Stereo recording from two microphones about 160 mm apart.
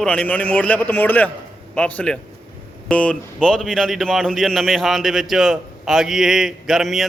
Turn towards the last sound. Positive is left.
turn(degrees=0)  # may be behind; listen again after turning